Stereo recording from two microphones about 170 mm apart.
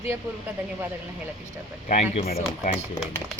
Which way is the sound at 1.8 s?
40° left (ahead or behind).